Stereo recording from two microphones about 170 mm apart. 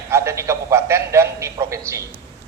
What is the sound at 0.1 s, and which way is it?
A man's voice, 15° right (ahead or behind).